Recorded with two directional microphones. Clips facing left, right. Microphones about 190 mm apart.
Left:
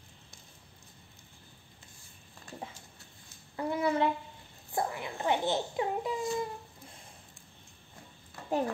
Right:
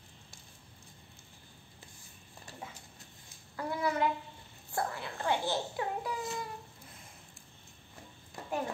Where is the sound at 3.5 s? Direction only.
25° left (ahead or behind).